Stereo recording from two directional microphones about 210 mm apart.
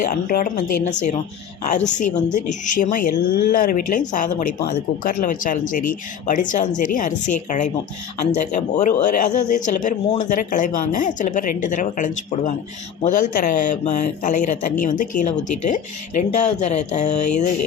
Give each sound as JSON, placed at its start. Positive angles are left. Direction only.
{"t": 0.0, "sound": "speech", "side_deg": 40}